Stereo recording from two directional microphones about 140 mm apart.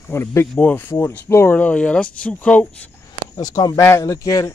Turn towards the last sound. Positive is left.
turn(degrees=25)  # may be behind; listen again after turning